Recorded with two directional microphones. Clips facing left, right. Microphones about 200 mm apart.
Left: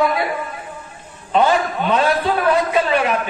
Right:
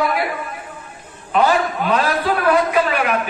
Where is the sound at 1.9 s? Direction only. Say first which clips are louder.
Left 3 dB; 25° left (ahead or behind).